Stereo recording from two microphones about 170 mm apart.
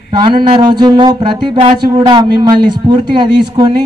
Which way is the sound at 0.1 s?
30° right (ahead or behind).